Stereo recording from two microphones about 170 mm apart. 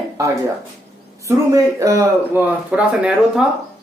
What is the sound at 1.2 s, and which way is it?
A man's voice, 20° right (ahead or behind).